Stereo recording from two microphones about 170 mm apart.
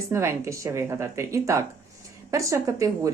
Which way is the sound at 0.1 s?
15° right (ahead or behind).